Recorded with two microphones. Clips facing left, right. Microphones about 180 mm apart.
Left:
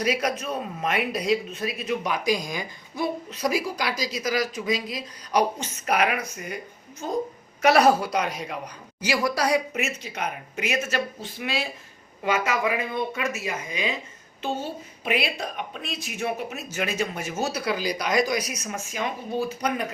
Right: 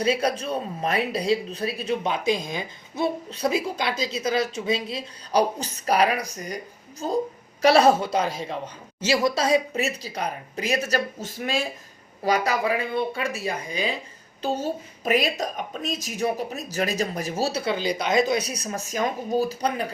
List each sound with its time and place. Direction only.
0.0 s speech: 30° right (ahead or behind)
7.6 s a woman's voice: 30° right (ahead or behind)